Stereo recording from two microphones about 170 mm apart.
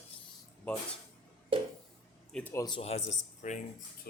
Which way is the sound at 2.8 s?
40° left (ahead or behind).